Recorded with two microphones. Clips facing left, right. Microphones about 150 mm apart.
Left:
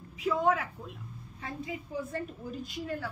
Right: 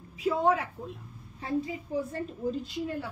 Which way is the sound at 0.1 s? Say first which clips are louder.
Right 2 dB; 30° right (ahead or behind).